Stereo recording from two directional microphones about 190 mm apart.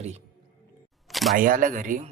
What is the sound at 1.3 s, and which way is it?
Speech, 45° right (ahead or behind).